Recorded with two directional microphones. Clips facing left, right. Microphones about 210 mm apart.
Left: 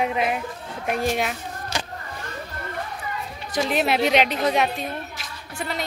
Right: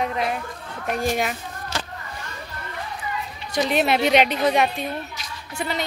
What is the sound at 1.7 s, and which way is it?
Vehicle, 15° left (ahead or behind).